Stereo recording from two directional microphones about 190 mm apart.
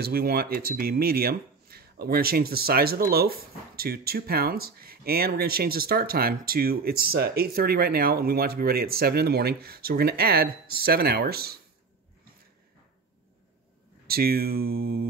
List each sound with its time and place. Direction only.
0.0 s speech: 50° right (ahead or behind)
14.0 s speech: 55° right (ahead or behind)